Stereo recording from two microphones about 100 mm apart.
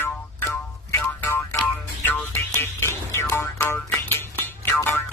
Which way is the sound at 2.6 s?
25° left (ahead or behind).